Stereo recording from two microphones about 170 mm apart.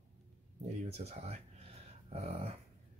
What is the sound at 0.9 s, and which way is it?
Speech, 40° right (ahead or behind).